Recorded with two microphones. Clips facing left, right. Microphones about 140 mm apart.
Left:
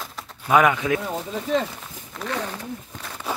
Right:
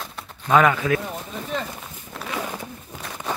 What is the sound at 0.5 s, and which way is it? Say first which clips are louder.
Speech: even; 15° left (ahead or behind).